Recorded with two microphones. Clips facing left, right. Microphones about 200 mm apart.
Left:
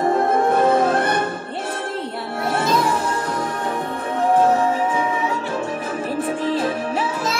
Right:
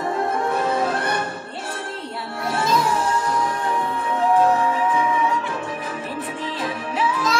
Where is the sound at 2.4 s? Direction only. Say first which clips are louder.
Left 1 dB; 55° left (ahead or behind).